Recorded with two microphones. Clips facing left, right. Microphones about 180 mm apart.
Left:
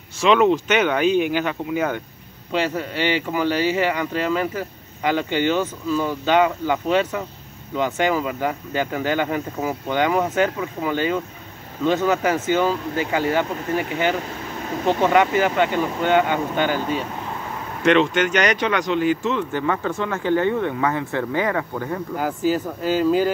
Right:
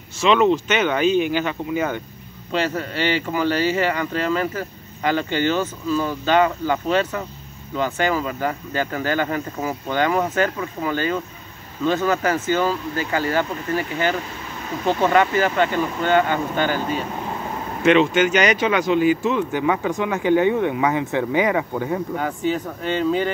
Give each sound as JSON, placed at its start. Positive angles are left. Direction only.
{"t": 0.2, "sound": "speech", "side_deg": 10}
{"t": 17.8, "sound": "speech", "side_deg": -5}
{"t": 22.1, "sound": "speech", "side_deg": 5}